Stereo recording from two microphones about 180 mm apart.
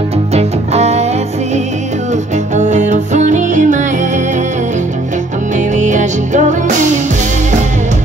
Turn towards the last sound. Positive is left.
turn(degrees=-40)  # may be behind; listen again after turning